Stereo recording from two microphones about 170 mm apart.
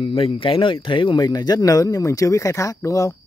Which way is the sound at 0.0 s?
30° left (ahead or behind).